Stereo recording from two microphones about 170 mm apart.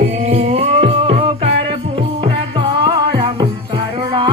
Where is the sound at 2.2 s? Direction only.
25° right (ahead or behind).